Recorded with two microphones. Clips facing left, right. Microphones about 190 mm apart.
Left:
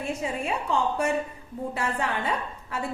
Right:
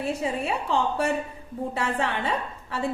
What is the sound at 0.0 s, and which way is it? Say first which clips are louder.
A woman's voice: right 2 dB; 30° right (ahead or behind).